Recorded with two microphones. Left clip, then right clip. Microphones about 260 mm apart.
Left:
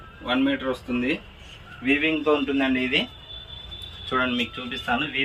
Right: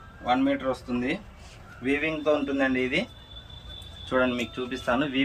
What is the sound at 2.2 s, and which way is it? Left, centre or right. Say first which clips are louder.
Speech: left 2 dB; centre.